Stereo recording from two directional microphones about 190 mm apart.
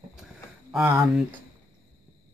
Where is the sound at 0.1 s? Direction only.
5° right (ahead or behind).